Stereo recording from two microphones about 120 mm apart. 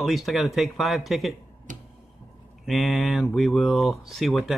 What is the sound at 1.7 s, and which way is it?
Tick-tock, 90° right.